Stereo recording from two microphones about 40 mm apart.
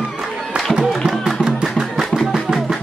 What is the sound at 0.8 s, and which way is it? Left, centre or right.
Music, centre.